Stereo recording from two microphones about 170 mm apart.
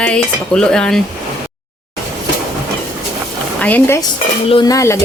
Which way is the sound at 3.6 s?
10° left (ahead or behind).